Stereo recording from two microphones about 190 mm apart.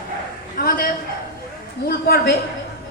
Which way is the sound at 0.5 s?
50° left (ahead or behind).